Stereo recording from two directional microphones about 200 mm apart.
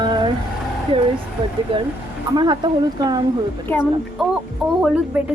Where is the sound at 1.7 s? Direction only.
25° right (ahead or behind).